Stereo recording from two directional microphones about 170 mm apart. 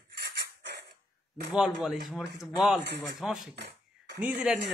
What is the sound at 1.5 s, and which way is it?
A man's voice, centre (ahead or behind).